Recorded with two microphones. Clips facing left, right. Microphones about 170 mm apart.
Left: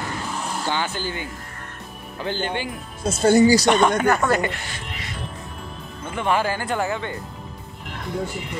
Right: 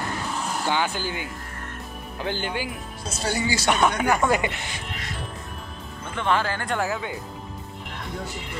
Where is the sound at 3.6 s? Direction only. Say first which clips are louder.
Left 4 dB; 5° right (ahead or behind).